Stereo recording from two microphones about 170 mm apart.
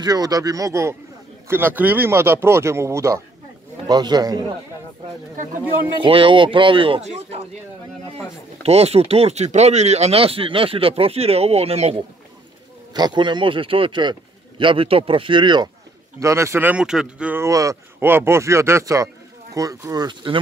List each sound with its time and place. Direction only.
0.0 s speech: 20° right (ahead or behind)
5.3 s speech: 50° right (ahead or behind)
5.9 s speech: 30° right (ahead or behind)
8.6 s speech: 35° right (ahead or behind)
12.9 s speech: 25° right (ahead or behind)